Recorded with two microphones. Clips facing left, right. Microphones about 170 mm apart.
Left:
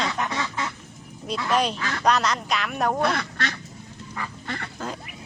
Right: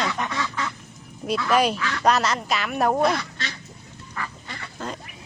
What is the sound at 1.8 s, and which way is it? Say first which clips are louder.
Speech: right 1 dB; 40° left (ahead or behind).